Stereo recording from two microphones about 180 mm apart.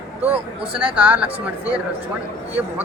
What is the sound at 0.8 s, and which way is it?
Speech, 10° right (ahead or behind).